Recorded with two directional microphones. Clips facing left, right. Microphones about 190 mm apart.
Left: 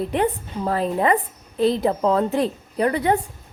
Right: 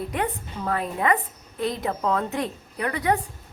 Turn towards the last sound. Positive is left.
turn(degrees=30)  # may be behind; listen again after turning